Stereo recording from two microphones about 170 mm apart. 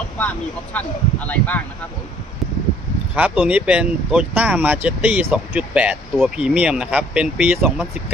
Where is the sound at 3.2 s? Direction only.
10° right (ahead or behind).